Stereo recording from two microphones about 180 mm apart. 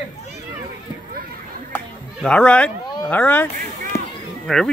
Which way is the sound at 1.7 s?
5° left (ahead or behind).